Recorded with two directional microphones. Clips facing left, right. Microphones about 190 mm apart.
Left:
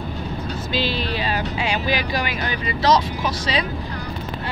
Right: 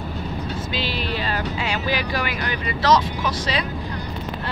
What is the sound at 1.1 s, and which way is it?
Speech, 15° left (ahead or behind).